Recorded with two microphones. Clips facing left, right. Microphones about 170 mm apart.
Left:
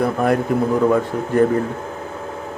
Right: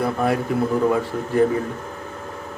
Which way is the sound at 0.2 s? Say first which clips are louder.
Left 3 dB; 50° left (ahead or behind).